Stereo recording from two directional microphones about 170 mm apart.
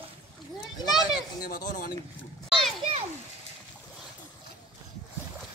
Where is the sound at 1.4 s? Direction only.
55° left (ahead or behind).